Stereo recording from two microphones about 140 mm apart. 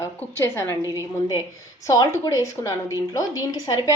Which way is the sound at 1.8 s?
25° left (ahead or behind).